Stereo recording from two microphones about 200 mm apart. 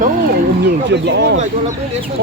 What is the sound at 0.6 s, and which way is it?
Speech, 60° right (ahead or behind).